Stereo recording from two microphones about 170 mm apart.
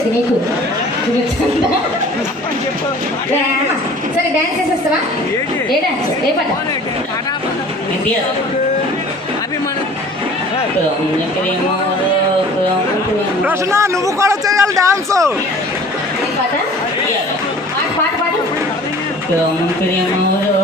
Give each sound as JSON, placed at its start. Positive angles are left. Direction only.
{"t": 13.4, "sound": "a man's voice", "side_deg": -15}